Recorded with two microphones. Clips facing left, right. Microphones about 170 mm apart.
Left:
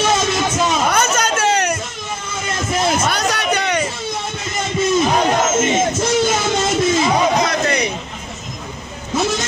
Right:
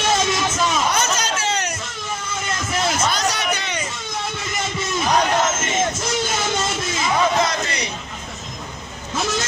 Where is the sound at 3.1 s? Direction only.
60° left (ahead or behind).